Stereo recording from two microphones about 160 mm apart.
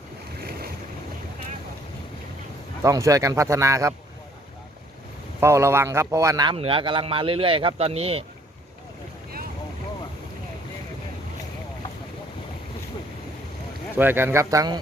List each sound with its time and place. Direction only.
2.8 s speech: 20° right (ahead or behind)
5.4 s a man's voice: 15° right (ahead or behind); by 8.2 s 40° right (ahead or behind)
13.9 s speech: 15° right (ahead or behind)